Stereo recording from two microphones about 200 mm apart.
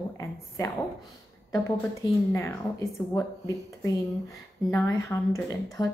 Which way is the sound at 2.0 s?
15° left (ahead or behind).